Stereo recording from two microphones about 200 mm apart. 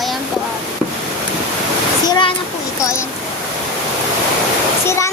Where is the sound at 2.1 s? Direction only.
25° left (ahead or behind).